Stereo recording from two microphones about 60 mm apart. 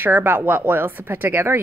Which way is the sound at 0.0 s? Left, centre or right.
Right.